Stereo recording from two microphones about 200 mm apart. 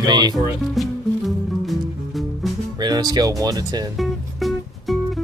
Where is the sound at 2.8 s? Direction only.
20° right (ahead or behind).